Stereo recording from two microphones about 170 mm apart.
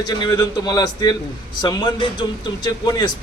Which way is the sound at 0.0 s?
25° left (ahead or behind).